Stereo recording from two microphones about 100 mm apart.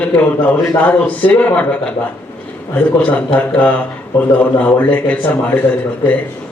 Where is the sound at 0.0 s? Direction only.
15° left (ahead or behind).